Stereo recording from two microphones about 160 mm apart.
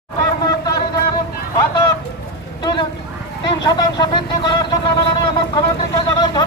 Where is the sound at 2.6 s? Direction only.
30° left (ahead or behind).